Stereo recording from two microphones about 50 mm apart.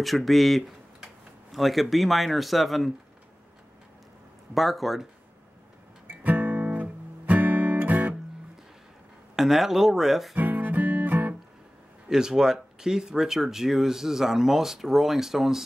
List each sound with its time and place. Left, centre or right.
0.0 s speech: centre
4.6 s speech: centre
6.0 s guitar: right
9.3 s speech: centre
10.3 s music: right
12.1 s speech: centre